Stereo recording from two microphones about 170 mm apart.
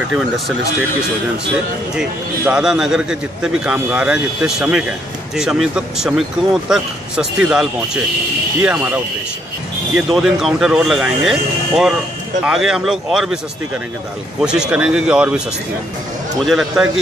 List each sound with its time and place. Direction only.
2.0 s speech: 5° right (ahead or behind)
8.6 s speech: 5° right (ahead or behind)
14.4 s speech: 5° right (ahead or behind)
16.4 s speech: 5° right (ahead or behind)